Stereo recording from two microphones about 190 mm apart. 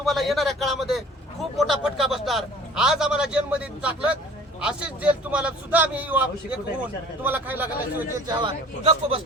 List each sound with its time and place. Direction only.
0.0 s a man's voice: centre (ahead or behind)
8.3 s a man's voice: 30° right (ahead or behind)